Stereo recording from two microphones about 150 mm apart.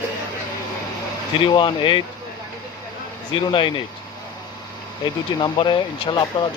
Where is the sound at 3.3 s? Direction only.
35° left (ahead or behind).